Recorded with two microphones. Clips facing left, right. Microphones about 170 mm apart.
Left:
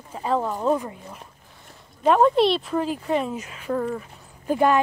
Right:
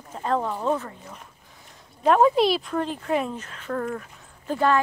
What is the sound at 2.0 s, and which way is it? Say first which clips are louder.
Speech: left 1 dB; centre (ahead or behind).